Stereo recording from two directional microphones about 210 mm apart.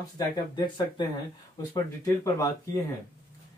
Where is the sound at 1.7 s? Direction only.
15° left (ahead or behind).